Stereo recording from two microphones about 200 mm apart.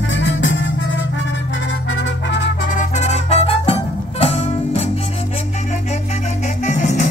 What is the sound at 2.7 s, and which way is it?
Music, 40° left (ahead or behind).